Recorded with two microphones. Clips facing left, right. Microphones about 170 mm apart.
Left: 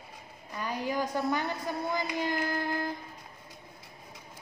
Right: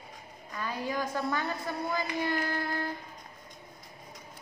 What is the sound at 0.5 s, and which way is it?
A woman's voice, 15° left (ahead or behind).